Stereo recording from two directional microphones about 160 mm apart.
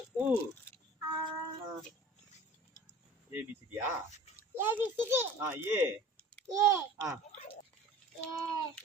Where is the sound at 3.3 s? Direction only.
10° right (ahead or behind).